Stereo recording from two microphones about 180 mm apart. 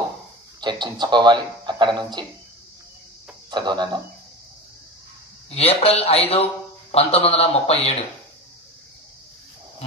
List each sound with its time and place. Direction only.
0.6 s speech: 25° right (ahead or behind)
3.4 s speech: 25° right (ahead or behind)
5.5 s a man's voice: 35° left (ahead or behind)